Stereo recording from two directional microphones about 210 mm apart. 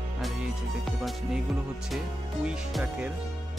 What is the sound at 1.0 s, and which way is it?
Speech, centre (ahead or behind).